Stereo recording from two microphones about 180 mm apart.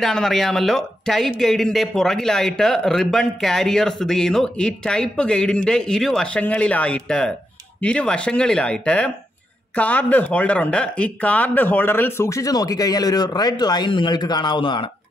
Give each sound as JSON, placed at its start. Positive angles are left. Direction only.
{"t": 0.0, "sound": "a man's voice", "side_deg": 5}